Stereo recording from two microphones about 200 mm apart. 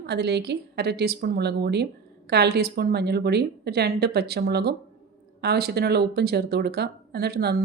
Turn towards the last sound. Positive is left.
turn(degrees=-55)  # may be behind; listen again after turning